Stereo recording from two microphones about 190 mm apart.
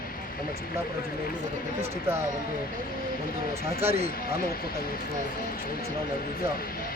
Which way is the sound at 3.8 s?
30° right (ahead or behind).